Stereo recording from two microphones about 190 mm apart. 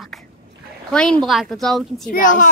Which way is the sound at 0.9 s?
5° left (ahead or behind).